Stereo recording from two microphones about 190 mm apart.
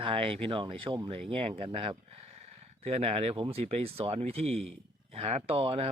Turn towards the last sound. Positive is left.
turn(degrees=-30)  # may be behind; listen again after turning